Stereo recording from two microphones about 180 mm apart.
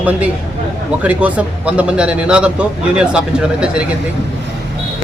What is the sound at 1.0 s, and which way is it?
A man's voice, 5° right (ahead or behind).